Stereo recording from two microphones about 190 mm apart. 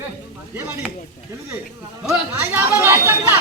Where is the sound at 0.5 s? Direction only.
10° right (ahead or behind).